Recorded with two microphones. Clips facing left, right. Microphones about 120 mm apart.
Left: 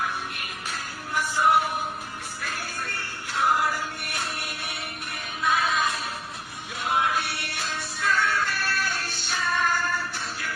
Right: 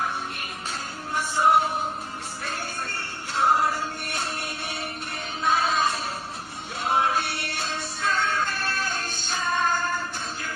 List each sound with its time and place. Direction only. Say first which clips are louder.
0.7 s music: even; 30° right (ahead or behind)